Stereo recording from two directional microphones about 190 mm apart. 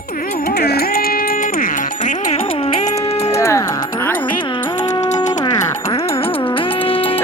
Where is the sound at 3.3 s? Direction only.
15° left (ahead or behind).